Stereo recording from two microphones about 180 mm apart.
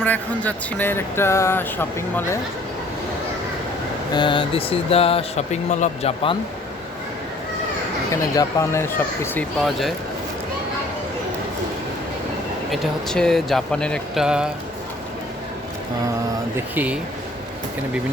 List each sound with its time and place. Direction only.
0.0 s speech: 10° left (ahead or behind)
4.1 s speech: 25° left (ahead or behind)
8.1 s speech: 15° left (ahead or behind); by 9.9 s centre (ahead or behind)
12.7 s speech: centre (ahead or behind)
16.7 s speech: 10° right (ahead or behind)